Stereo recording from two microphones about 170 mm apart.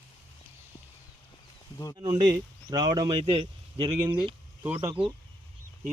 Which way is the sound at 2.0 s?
30° right (ahead or behind).